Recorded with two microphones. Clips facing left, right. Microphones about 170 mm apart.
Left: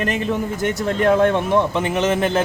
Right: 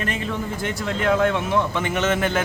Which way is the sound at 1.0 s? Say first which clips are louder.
Left 4 dB; 35° left (ahead or behind).